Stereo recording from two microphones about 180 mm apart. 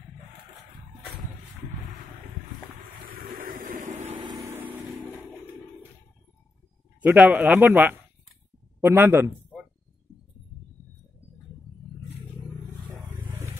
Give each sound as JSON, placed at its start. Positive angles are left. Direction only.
{"t": 3.1, "sound": "a sound", "side_deg": -55}
{"t": 4.2, "sound": "vehicle", "side_deg": -20}
{"t": 7.0, "sound": "speech", "side_deg": -10}
{"t": 12.9, "sound": "vehicle", "side_deg": -10}